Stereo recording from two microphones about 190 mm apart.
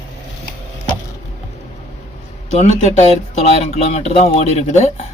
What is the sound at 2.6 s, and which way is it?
Speech, 35° left (ahead or behind).